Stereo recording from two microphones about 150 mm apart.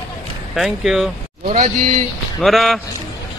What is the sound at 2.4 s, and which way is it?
Speech, centre (ahead or behind).